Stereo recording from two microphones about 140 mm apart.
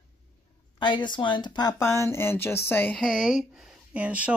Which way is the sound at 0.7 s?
35° left (ahead or behind).